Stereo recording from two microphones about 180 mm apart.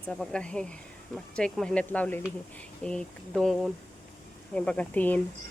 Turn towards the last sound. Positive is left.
turn(degrees=10)  # may be behind; listen again after turning